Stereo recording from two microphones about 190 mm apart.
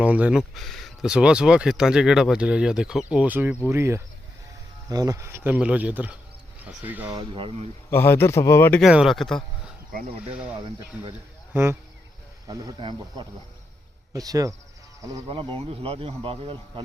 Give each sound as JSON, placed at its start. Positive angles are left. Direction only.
{"t": 0.0, "sound": "speech", "side_deg": -5}
{"t": 7.2, "sound": "speech", "side_deg": -30}
{"t": 7.9, "sound": "a man's voice", "side_deg": 10}
{"t": 8.8, "sound": "speech", "side_deg": 0}
{"t": 9.9, "sound": "speech", "side_deg": -45}
{"t": 11.5, "sound": "speech", "side_deg": -15}